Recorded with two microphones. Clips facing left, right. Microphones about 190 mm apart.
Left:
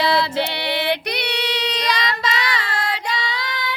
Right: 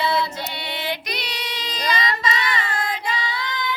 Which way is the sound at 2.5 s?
80° left.